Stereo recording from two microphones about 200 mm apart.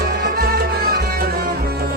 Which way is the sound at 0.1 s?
50° right (ahead or behind).